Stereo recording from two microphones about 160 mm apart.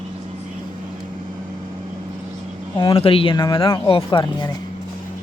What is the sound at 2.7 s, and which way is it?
Speech, 30° left (ahead or behind).